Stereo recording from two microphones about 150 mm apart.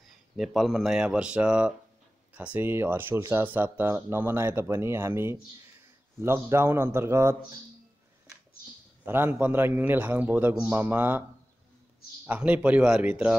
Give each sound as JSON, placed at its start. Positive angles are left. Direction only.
{"t": 0.4, "sound": "a man's voice", "side_deg": 0}
{"t": 9.0, "sound": "a man's voice", "side_deg": -15}
{"t": 12.3, "sound": "a man's voice", "side_deg": -10}